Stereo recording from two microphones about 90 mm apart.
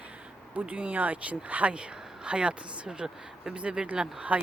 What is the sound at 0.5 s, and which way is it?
Speech, 15° right (ahead or behind).